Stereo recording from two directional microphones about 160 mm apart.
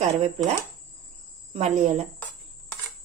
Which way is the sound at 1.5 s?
45° right (ahead or behind).